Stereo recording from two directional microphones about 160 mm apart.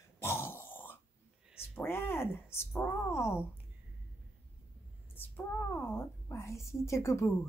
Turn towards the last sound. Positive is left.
turn(degrees=20)  # may be behind; listen again after turning